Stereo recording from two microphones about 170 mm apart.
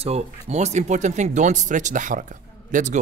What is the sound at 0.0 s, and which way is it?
Speech, 40° right (ahead or behind).